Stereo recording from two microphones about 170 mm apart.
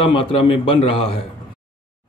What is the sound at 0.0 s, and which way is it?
Speech, 30° left (ahead or behind).